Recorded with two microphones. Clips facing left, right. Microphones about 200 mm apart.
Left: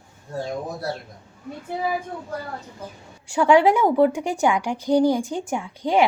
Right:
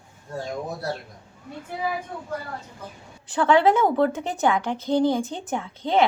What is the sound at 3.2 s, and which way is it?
A woman's voice, 10° left (ahead or behind).